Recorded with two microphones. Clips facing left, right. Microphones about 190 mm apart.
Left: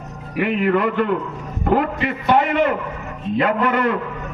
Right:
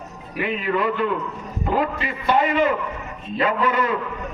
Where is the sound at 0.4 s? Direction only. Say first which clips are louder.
Left 4 dB; 60° left (ahead or behind).